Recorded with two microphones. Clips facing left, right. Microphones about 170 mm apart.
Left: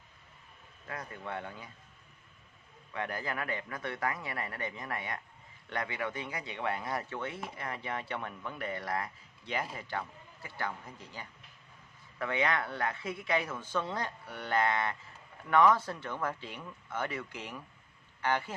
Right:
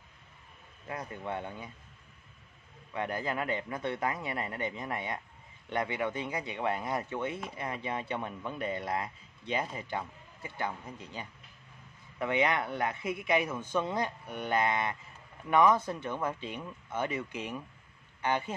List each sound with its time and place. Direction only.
0.8 s speech: 20° right (ahead or behind)
2.9 s speech: 20° right (ahead or behind)